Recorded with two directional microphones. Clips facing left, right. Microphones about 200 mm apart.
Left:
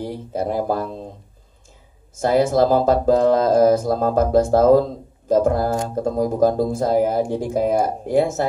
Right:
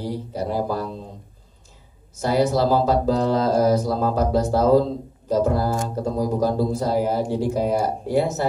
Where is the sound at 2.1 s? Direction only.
50° left (ahead or behind).